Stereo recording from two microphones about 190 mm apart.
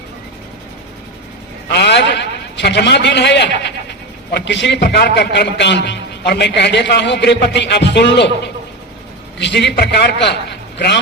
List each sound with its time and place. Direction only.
1.8 s a man's voice: 65° left (ahead or behind)
9.4 s a man's voice: 65° left (ahead or behind)